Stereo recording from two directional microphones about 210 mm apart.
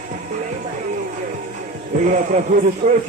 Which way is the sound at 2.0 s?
35° right (ahead or behind).